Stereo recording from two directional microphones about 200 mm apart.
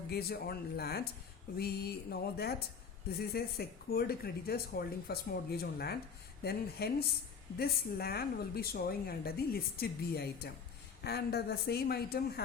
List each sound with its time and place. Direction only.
0.1 s a woman's voice: 50° left (ahead or behind)